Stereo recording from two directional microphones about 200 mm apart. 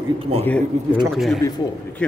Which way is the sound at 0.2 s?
30° right (ahead or behind).